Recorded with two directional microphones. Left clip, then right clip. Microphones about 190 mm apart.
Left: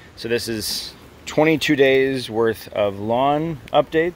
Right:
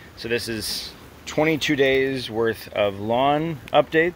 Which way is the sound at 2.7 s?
25° left (ahead or behind).